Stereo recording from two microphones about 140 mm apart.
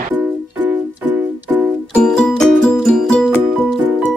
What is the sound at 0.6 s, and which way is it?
Music, 10° right (ahead or behind).